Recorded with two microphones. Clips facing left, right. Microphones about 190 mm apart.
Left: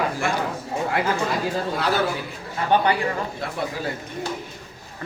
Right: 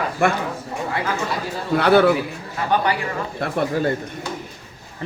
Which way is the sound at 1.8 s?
65° right (ahead or behind).